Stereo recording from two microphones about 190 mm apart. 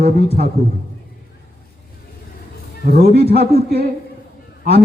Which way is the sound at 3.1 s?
30° left (ahead or behind).